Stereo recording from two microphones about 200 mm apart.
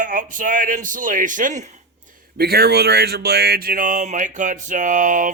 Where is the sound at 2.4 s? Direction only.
50° right (ahead or behind).